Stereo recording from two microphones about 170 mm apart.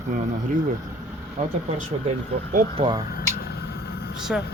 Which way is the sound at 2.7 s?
30° right (ahead or behind).